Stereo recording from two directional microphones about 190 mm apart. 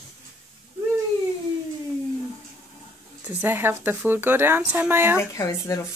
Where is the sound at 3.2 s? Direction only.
10° right (ahead or behind).